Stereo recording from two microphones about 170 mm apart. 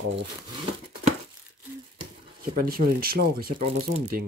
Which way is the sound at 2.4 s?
60° right (ahead or behind).